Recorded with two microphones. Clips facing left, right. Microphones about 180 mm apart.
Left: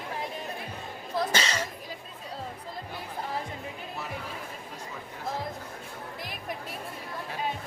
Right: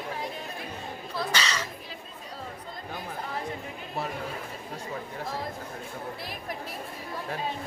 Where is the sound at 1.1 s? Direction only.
45° left (ahead or behind).